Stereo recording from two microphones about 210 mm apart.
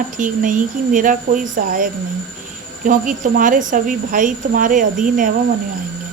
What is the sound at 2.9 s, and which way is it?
A woman's voice, 40° right (ahead or behind).